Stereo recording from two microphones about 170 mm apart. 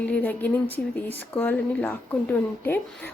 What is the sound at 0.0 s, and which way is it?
Speech, 10° left (ahead or behind).